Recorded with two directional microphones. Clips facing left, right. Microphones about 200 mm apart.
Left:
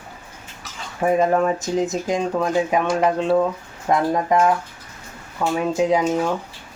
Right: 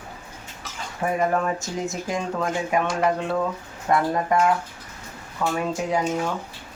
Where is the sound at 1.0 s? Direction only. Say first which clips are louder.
Left 5 dB; 20° left (ahead or behind).